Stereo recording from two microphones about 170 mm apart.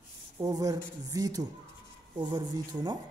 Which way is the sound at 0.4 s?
20° right (ahead or behind).